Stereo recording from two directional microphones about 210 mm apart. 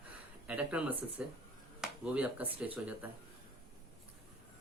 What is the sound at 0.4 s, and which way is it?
Speech, 5° right (ahead or behind).